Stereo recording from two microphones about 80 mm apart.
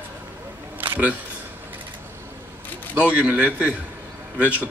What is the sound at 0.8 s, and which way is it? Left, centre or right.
Camera, right.